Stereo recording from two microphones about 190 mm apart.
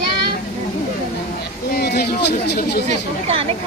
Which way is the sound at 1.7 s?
60° left (ahead or behind).